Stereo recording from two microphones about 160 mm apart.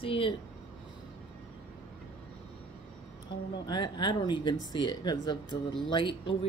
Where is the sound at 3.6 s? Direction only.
25° left (ahead or behind).